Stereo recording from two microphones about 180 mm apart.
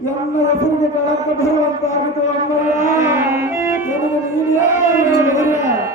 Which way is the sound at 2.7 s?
40° left (ahead or behind).